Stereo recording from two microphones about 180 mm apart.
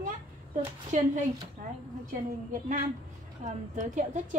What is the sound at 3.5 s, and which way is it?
Speech, 45° right (ahead or behind).